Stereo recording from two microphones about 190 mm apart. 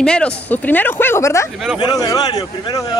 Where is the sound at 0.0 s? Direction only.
5° left (ahead or behind).